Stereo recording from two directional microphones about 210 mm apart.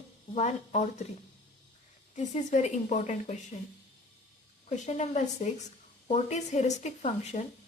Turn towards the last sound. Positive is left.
turn(degrees=35)  # may be behind; listen again after turning